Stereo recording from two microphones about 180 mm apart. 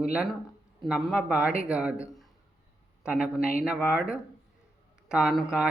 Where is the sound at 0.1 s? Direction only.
5° right (ahead or behind).